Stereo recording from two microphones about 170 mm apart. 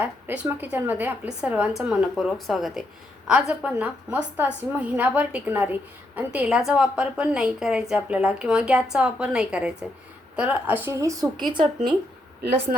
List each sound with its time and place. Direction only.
0.0 s a woman's voice: 10° right (ahead or behind); by 11.7 s 25° right (ahead or behind)